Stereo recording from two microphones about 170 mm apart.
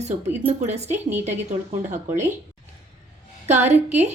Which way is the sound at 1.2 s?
40° right (ahead or behind).